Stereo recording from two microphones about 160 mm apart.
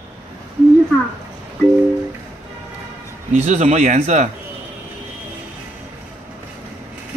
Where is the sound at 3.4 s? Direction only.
40° right (ahead or behind).